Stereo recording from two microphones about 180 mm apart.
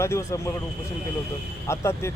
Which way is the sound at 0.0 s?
15° left (ahead or behind).